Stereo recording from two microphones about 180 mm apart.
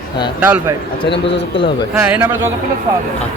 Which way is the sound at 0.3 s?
10° right (ahead or behind).